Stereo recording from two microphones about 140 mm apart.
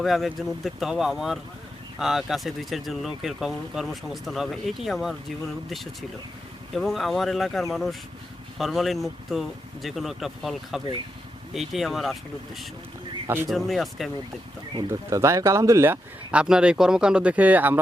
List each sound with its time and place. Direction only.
0.0 s speech: centre (ahead or behind)
13.2 s speech: 15° right (ahead or behind)
13.7 s speech: centre (ahead or behind)
14.7 s speech: 30° right (ahead or behind); by 17.7 s 10° right (ahead or behind)